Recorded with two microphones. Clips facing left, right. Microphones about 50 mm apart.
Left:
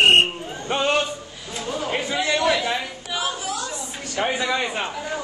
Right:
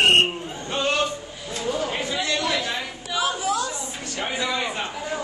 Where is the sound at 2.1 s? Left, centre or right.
Left.